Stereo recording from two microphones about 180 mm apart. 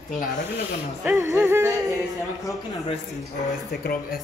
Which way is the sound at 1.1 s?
15° right (ahead or behind).